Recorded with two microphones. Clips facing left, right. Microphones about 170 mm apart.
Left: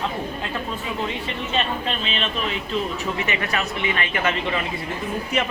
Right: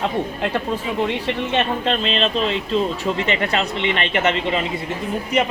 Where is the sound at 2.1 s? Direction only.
30° right (ahead or behind).